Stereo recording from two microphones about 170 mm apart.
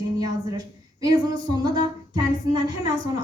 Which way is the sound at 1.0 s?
25° right (ahead or behind).